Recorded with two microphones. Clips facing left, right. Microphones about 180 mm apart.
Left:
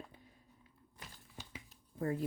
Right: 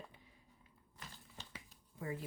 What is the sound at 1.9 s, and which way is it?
Speech, 45° left (ahead or behind).